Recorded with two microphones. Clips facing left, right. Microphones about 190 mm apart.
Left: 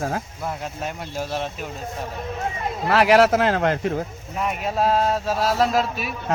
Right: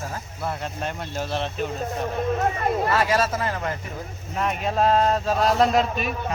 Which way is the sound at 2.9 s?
75° left (ahead or behind).